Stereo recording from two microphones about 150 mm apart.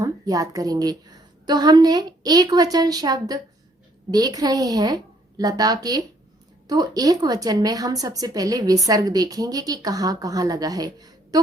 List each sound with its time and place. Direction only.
0.0 s a woman's voice: 20° right (ahead or behind)